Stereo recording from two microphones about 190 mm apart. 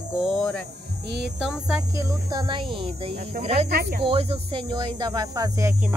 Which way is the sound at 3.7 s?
55° right (ahead or behind).